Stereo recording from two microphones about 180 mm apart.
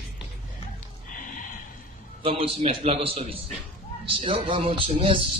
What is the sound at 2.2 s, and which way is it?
Speech, 30° right (ahead or behind).